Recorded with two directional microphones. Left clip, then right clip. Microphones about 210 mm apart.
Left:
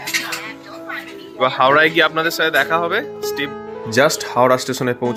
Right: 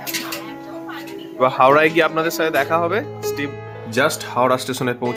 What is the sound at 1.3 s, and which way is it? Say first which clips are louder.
Speech: even; 10° right (ahead or behind).